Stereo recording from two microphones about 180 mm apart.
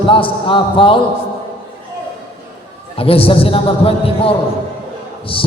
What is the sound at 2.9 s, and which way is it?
A man's voice, 30° left (ahead or behind).